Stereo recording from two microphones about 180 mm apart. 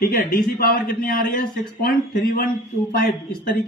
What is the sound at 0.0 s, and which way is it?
A man's voice, 50° left (ahead or behind).